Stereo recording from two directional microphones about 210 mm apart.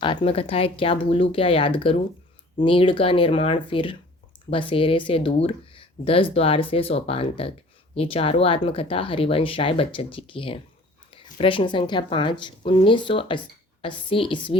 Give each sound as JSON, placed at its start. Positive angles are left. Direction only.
{"t": 0.2, "sound": "speech", "side_deg": 30}